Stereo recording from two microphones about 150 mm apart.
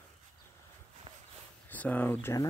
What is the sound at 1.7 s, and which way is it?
Speech, 10° left (ahead or behind).